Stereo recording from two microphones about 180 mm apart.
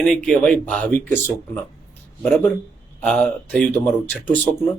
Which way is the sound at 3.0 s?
5° left (ahead or behind).